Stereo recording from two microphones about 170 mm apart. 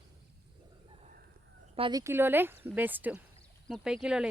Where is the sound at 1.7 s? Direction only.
30° right (ahead or behind).